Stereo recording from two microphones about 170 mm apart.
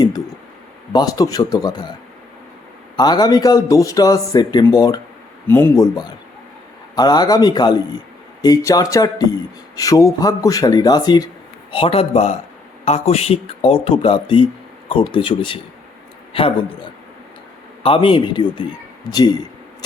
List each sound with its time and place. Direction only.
0.9 s a man's voice: 20° left (ahead or behind)
2.9 s a man's voice: 25° left (ahead or behind)
17.8 s speech: 30° left (ahead or behind)